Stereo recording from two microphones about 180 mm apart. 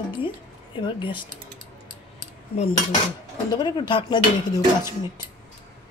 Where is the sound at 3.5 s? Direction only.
20° left (ahead or behind).